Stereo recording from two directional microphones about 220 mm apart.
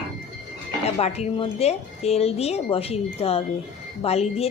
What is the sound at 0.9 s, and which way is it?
Speech, 30° left (ahead or behind).